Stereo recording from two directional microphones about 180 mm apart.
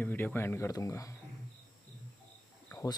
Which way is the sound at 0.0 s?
10° left (ahead or behind).